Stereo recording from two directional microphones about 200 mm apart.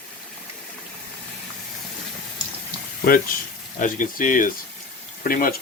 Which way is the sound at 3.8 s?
40° left (ahead or behind).